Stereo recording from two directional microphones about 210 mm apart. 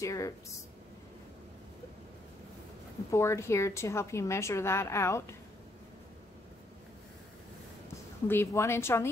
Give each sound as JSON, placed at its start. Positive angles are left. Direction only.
{"t": 0.0, "sound": "a woman's voice", "side_deg": 15}
{"t": 3.1, "sound": "a woman's voice", "side_deg": 15}
{"t": 8.3, "sound": "a woman's voice", "side_deg": 10}